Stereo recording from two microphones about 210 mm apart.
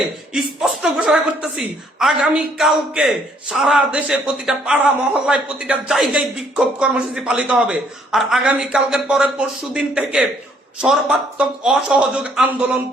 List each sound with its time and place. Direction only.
0.3 s a woman's voice: centre (ahead or behind)